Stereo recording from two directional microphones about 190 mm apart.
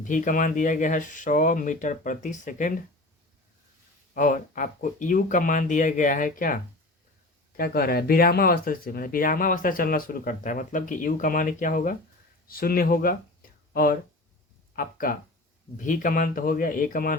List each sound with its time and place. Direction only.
0.0 s speech: 45° left (ahead or behind)
4.1 s speech: 45° left (ahead or behind)
14.8 s speech: 45° left (ahead or behind)